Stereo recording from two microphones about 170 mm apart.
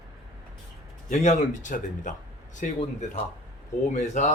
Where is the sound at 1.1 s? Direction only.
45° left (ahead or behind).